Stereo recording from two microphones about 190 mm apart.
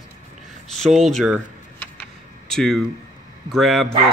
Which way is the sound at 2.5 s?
Centre (ahead or behind).